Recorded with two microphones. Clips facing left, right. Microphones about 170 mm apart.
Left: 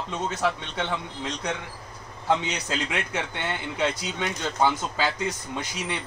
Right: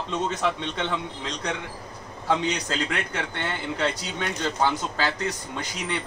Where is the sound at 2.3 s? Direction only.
10° left (ahead or behind).